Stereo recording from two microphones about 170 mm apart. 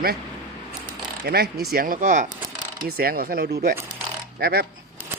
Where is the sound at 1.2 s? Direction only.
65° right (ahead or behind).